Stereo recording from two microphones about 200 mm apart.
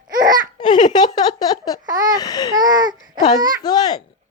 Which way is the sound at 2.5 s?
20° right (ahead or behind).